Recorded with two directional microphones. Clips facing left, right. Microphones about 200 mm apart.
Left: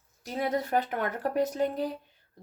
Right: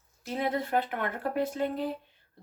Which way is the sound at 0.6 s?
40° left (ahead or behind).